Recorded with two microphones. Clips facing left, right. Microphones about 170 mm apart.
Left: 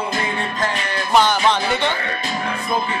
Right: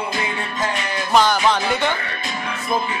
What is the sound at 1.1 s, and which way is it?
Speech, 5° right (ahead or behind).